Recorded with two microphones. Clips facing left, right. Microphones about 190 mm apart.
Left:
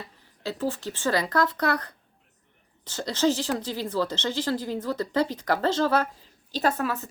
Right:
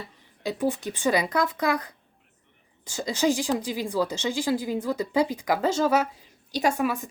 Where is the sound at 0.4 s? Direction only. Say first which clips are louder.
Right 3 dB; 15° right (ahead or behind).